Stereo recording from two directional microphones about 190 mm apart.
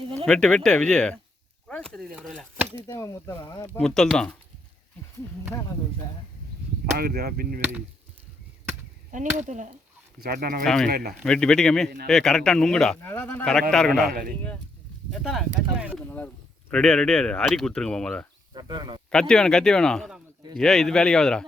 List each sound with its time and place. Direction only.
0.3 s speech: 5° left (ahead or behind)
2.8 s speech: 15° left (ahead or behind)
3.8 s speech: 5° left (ahead or behind)
6.9 s speech: 50° right (ahead or behind)
9.1 s speech: 40° right (ahead or behind)
10.2 s speech: 55° right (ahead or behind)
10.6 s speech: centre (ahead or behind)
10.8 s speech: 50° right (ahead or behind)
11.2 s speech: 5° left (ahead or behind)
14.1 s speech: 50° right (ahead or behind)
15.1 s speech: centre (ahead or behind)
16.0 s speech: 10° left (ahead or behind)
18.5 s speech: 25° right (ahead or behind)
19.3 s speech: 5° left (ahead or behind)